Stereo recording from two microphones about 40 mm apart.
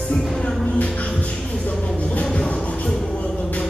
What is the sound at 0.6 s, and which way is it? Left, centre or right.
Music, left.